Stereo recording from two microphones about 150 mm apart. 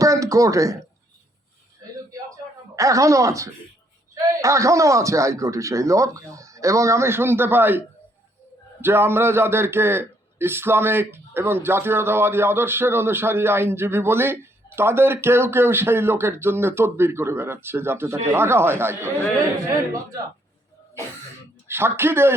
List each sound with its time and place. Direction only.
0.0 s a sound: 20° right (ahead or behind)
2.7 s a man's voice: 20° right (ahead or behind)
8.8 s a man's voice: 15° right (ahead or behind)
21.7 s a man's voice: 15° right (ahead or behind)